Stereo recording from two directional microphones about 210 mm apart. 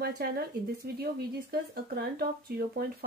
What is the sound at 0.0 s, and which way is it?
Speech, 50° right (ahead or behind).